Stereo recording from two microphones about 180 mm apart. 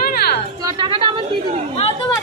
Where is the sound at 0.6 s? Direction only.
25° right (ahead or behind).